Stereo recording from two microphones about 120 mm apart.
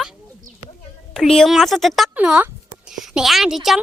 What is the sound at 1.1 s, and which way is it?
Speech, 5° left (ahead or behind).